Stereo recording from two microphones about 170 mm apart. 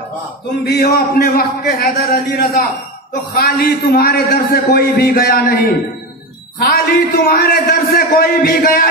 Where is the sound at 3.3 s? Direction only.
65° left (ahead or behind).